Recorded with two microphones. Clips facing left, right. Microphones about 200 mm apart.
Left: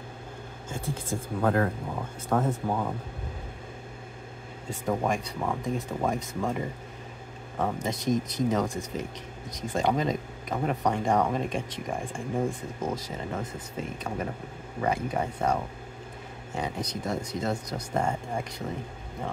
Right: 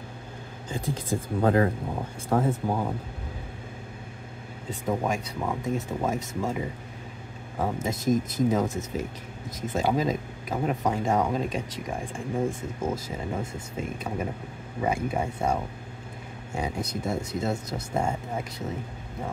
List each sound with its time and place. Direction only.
0.7 s speech: 15° right (ahead or behind)
4.8 s speech: centre (ahead or behind)